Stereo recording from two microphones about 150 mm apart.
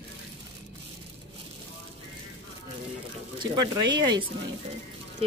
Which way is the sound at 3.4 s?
30° right (ahead or behind).